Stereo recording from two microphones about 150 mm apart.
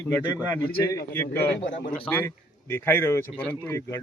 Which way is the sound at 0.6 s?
15° left (ahead or behind).